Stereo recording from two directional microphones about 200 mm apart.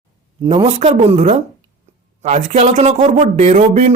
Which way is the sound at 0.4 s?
30° right (ahead or behind).